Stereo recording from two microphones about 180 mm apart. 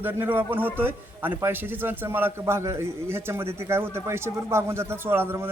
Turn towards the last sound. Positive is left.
turn(degrees=-15)  # may be behind; listen again after turning